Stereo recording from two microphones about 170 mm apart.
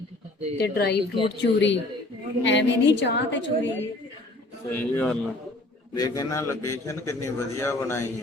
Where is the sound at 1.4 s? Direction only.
90° left.